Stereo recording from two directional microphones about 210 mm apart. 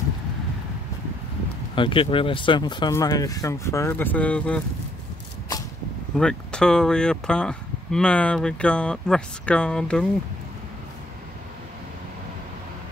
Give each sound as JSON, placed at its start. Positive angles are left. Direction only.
{"t": 1.8, "sound": "speech", "side_deg": 25}
{"t": 6.1, "sound": "speech", "side_deg": 5}